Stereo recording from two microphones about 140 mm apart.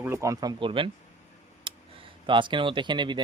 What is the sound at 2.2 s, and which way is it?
Speech, 35° right (ahead or behind).